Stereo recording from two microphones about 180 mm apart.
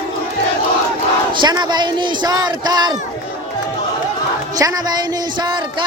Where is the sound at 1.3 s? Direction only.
25° right (ahead or behind).